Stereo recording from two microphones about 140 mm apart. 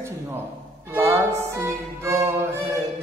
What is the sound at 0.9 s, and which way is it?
Music, 15° right (ahead or behind).